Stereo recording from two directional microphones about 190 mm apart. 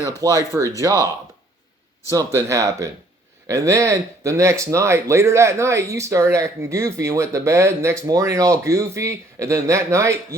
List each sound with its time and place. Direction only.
0.0 s speech: 15° right (ahead or behind)